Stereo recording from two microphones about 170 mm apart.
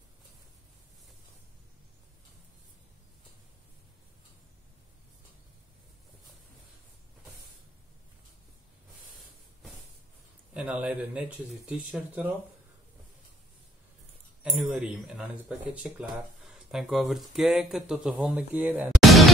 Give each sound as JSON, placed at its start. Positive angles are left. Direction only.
{"t": 10.5, "sound": "speech", "side_deg": -5}
{"t": 14.4, "sound": "speech", "side_deg": -5}